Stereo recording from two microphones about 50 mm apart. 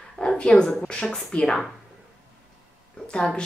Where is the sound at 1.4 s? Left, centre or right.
Centre.